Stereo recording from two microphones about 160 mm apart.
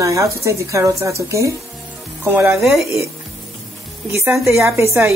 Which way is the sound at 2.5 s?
Centre (ahead or behind).